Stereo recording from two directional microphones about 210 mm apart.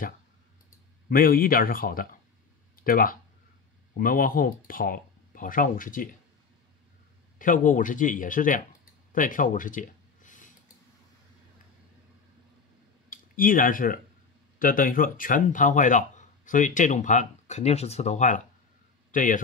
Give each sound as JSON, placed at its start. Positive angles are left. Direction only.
{"t": 1.1, "sound": "speech", "side_deg": 45}
{"t": 2.7, "sound": "a sound", "side_deg": 45}
{"t": 3.9, "sound": "speech", "side_deg": 45}
{"t": 7.3, "sound": "speech", "side_deg": 40}
{"t": 9.1, "sound": "a sound", "side_deg": 40}
{"t": 13.1, "sound": "speech", "side_deg": 40}